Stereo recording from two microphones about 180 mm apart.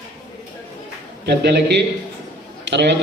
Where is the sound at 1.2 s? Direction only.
65° right (ahead or behind).